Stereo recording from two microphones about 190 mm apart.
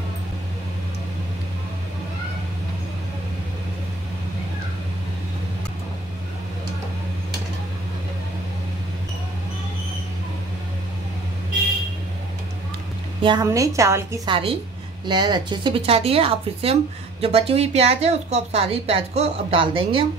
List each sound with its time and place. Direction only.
13.2 s a woman's voice: 20° right (ahead or behind)